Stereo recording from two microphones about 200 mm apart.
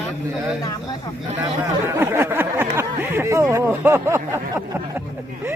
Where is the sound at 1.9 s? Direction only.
10° right (ahead or behind).